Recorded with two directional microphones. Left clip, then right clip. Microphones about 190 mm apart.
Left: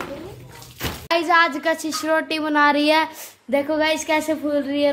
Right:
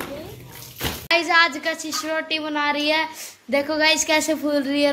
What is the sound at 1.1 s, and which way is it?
Speech, 25° left (ahead or behind).